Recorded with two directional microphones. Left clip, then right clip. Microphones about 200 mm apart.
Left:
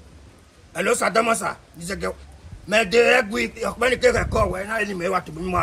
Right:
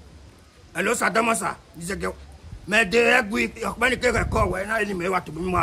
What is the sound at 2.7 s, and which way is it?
Speech, 10° right (ahead or behind).